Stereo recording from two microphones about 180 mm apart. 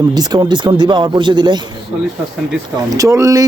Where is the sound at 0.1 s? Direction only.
20° right (ahead or behind).